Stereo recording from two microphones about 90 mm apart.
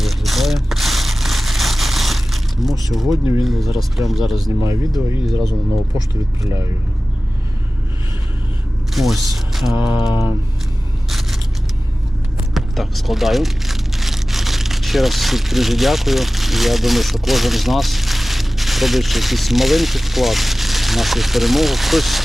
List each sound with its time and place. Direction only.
0.0 s a sound: centre (ahead or behind)
3.4 s speech: centre (ahead or behind)
4.4 s speech: 40° right (ahead or behind)
4.9 s speech: centre (ahead or behind)
8.9 s speech: centre (ahead or behind)
11.1 s a sound: centre (ahead or behind)
12.5 s speech: centre (ahead or behind)